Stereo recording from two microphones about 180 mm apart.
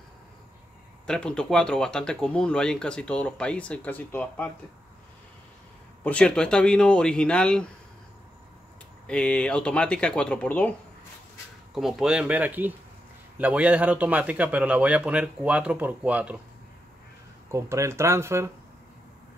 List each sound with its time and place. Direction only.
1.0 s speech: 5° left (ahead or behind)
6.0 s speech: 5° left (ahead or behind)
9.0 s speech: 5° left (ahead or behind)
11.7 s a man's voice: centre (ahead or behind)
17.5 s a man's voice: 15° right (ahead or behind)